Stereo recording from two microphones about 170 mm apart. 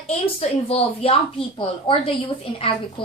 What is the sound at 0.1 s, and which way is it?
A woman's voice, 35° left (ahead or behind).